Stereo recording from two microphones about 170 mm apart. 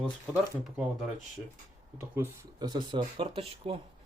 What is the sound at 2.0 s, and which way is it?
Speech, 15° right (ahead or behind).